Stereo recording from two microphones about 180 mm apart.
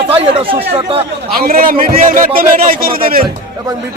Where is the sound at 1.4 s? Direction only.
55° right (ahead or behind).